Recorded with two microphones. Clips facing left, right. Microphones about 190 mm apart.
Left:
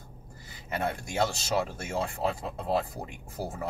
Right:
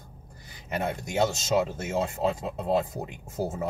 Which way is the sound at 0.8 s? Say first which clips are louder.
Right 3 dB; 20° right (ahead or behind).